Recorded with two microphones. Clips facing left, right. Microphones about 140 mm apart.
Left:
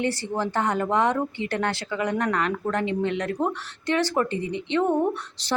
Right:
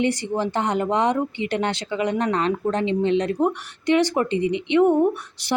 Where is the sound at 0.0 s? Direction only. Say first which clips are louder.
Right 4 dB; 15° right (ahead or behind).